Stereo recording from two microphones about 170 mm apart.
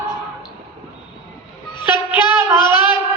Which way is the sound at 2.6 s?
25° left (ahead or behind).